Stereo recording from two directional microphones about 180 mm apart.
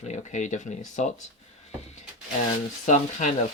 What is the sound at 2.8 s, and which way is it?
Speech, 40° left (ahead or behind).